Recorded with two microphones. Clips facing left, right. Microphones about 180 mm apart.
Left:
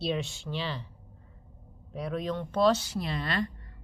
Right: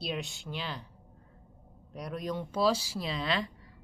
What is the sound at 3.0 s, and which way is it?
Speech, 50° left (ahead or behind).